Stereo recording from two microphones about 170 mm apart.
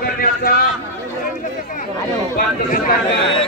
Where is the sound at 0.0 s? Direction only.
60° left (ahead or behind).